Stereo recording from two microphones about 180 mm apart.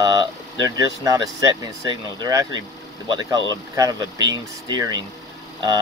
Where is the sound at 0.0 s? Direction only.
20° right (ahead or behind).